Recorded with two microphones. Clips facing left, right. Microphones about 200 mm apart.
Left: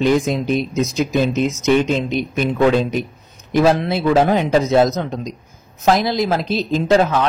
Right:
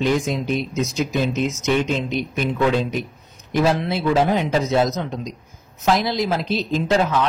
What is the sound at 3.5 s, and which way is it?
A man's voice, 45° left (ahead or behind).